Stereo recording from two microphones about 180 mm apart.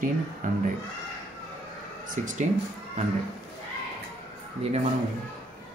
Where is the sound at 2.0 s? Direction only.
45° right (ahead or behind).